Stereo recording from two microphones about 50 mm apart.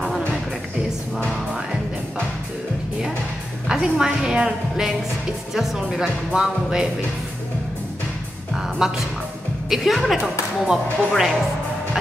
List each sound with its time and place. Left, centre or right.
1.3 s music: centre
3.6 s a woman's voice: centre
4.5 s speech: centre
8.5 s music: centre
9.7 s a woman's voice: centre